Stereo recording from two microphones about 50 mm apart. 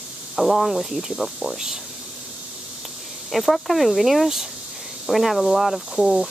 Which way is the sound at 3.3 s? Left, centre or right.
Centre.